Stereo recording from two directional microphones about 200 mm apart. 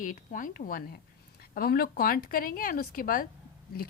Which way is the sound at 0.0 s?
40° left (ahead or behind).